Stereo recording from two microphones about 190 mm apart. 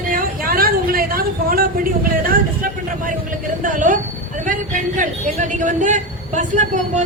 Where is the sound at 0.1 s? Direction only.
50° right (ahead or behind).